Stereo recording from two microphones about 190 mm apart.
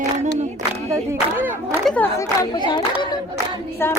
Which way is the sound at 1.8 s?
5° left (ahead or behind).